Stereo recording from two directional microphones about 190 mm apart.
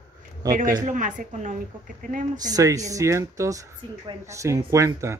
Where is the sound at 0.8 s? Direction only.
40° right (ahead or behind).